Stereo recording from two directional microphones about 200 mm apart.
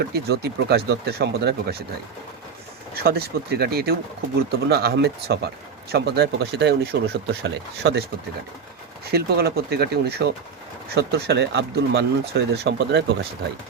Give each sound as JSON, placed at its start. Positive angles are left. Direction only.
{"t": 0.1, "sound": "speech", "side_deg": -55}
{"t": 2.9, "sound": "speech", "side_deg": -50}
{"t": 9.0, "sound": "speech", "side_deg": -50}